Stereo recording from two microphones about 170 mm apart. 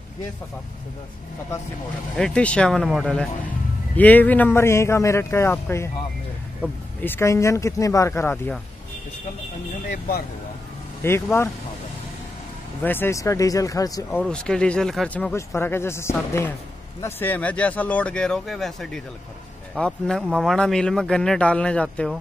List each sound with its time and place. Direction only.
2.1 s a man's voice: 5° left (ahead or behind)
9.8 s speech: 55° left (ahead or behind)
11.0 s a man's voice: 15° left (ahead or behind)
12.8 s speech: 10° left (ahead or behind)
14.2 s a man's voice: 5° left (ahead or behind)